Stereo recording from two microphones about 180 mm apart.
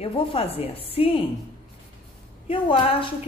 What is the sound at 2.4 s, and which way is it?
Speech, 30° left (ahead or behind).